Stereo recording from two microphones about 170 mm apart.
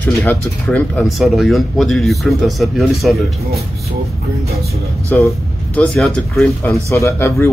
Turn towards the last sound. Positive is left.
turn(degrees=15)  # may be behind; listen again after turning